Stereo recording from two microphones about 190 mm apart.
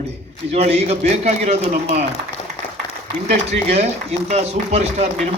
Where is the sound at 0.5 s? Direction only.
35° right (ahead or behind).